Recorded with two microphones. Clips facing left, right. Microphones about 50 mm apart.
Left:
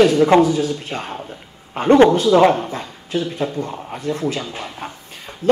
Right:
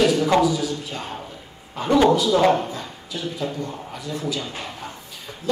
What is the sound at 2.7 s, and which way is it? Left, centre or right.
A man's voice, left.